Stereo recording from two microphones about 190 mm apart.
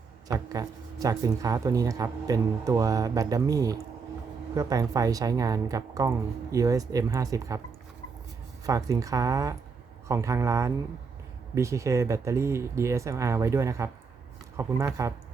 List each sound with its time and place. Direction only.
0.3 s speech: 20° right (ahead or behind)
8.6 s speech: 20° right (ahead or behind)